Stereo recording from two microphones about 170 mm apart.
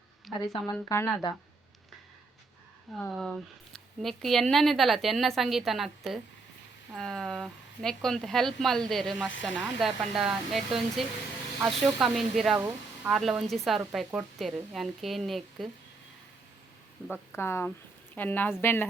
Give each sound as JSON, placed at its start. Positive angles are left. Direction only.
{"t": 0.3, "sound": "speech", "side_deg": 20}
{"t": 3.2, "sound": "speech", "side_deg": 0}
{"t": 17.1, "sound": "a woman's voice", "side_deg": 15}